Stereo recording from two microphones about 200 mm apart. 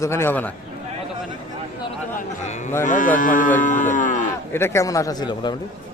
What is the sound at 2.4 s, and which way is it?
Speech, 35° left (ahead or behind).